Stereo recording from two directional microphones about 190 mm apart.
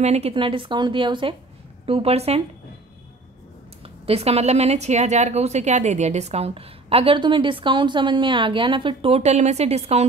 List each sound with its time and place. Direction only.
0.0 s a woman's voice: 35° right (ahead or behind)
3.8 s a woman's voice: 30° right (ahead or behind)